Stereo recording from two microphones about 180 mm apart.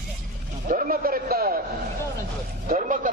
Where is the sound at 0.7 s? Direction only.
50° right (ahead or behind).